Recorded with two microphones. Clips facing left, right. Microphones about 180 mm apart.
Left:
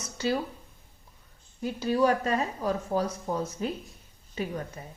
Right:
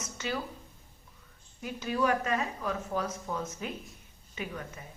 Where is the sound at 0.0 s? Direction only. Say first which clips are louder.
Left 6 dB; 35° left (ahead or behind).